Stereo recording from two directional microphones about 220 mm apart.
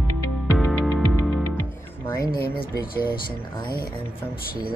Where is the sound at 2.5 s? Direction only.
40° left (ahead or behind).